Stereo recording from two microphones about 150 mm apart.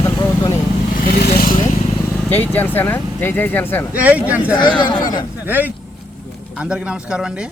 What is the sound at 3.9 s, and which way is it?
Speech, 10° right (ahead or behind).